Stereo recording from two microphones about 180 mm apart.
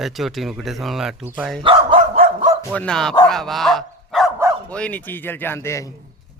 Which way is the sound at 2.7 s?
5° left (ahead or behind).